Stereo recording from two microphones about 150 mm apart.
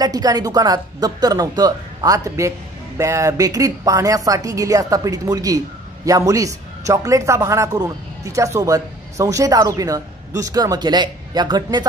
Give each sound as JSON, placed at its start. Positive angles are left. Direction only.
{"t": 0.0, "sound": "a man's voice", "side_deg": -25}